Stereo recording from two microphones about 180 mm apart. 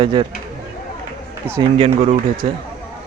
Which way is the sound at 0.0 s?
30° right (ahead or behind).